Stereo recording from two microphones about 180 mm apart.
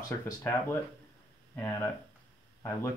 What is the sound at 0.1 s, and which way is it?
Speech, 10° left (ahead or behind).